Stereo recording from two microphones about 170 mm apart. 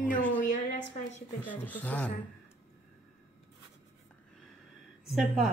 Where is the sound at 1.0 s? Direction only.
45° left (ahead or behind).